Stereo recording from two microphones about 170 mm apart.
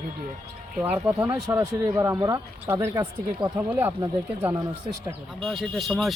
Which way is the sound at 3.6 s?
10° right (ahead or behind).